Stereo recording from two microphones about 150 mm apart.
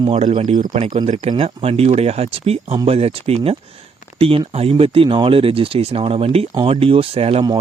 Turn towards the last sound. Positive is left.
turn(degrees=-40)  # may be behind; listen again after turning